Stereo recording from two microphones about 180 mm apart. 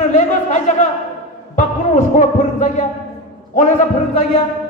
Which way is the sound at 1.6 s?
45° left (ahead or behind).